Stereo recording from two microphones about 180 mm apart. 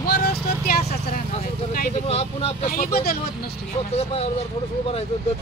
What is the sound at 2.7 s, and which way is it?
Speech, 55° left (ahead or behind).